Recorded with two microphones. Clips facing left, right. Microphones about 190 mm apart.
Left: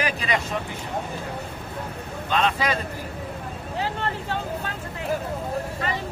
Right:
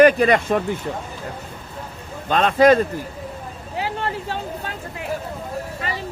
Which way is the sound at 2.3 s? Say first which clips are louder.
Right 10 dB; 45° right (ahead or behind).